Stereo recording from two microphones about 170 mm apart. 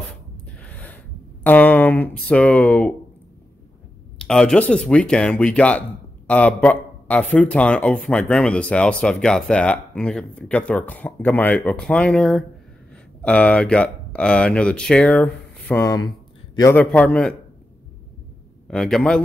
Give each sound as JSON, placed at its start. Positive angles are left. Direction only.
{"t": 0.6, "sound": "speech", "side_deg": 10}
{"t": 4.2, "sound": "speech", "side_deg": 5}
{"t": 18.7, "sound": "a man's voice", "side_deg": 5}